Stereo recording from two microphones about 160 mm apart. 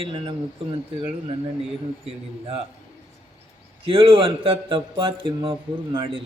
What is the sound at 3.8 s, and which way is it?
Mantra, 35° right (ahead or behind).